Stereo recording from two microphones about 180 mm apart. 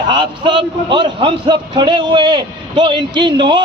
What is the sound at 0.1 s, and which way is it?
A man's voice, 25° right (ahead or behind).